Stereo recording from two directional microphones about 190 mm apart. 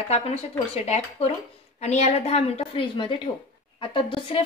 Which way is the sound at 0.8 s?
35° left (ahead or behind).